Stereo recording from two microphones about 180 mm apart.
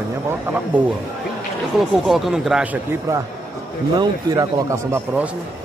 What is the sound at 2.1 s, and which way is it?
A man's voice, centre (ahead or behind).